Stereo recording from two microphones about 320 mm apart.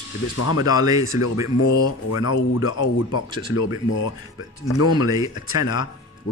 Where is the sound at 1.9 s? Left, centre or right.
Left.